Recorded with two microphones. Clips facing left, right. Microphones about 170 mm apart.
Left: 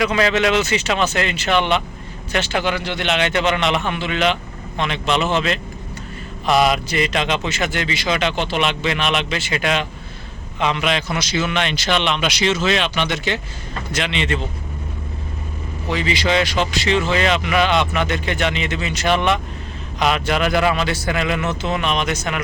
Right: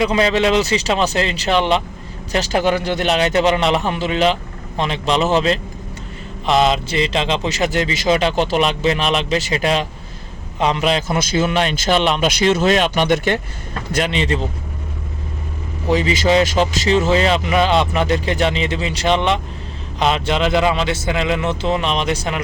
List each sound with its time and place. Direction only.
0.0 s speech: 30° right (ahead or behind)
6.4 s a man's voice: 20° right (ahead or behind); by 13.4 s 50° right (ahead or behind)
14.0 s speech: 40° right (ahead or behind)
15.9 s speech: 40° right (ahead or behind)